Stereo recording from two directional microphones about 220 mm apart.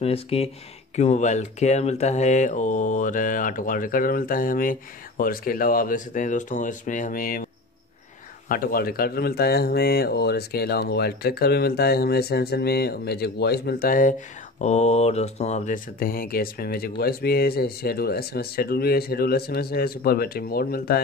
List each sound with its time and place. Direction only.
0.0 s speech: 25° left (ahead or behind)
8.5 s speech: 45° left (ahead or behind)